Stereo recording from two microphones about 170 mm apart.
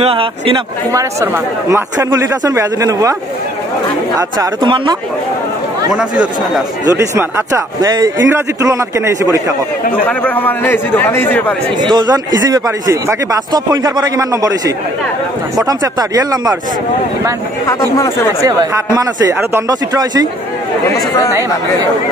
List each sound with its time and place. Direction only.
0.0 s a man's voice: 30° right (ahead or behind)
0.9 s speech: 15° right (ahead or behind)
4.2 s speech: 25° right (ahead or behind)
5.9 s speech: 5° right (ahead or behind)
6.9 s a man's voice: 15° right (ahead or behind)
10.0 s a man's voice: 10° left (ahead or behind)
11.8 s speech: 25° right (ahead or behind)
15.5 s speech: 20° right (ahead or behind)
17.6 s a man's voice: 20° left (ahead or behind)
18.4 s speech: 20° right (ahead or behind)